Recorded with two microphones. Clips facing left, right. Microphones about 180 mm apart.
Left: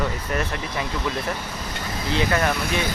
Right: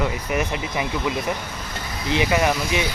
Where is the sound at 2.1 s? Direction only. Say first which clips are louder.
Right 2 dB; 15° right (ahead or behind).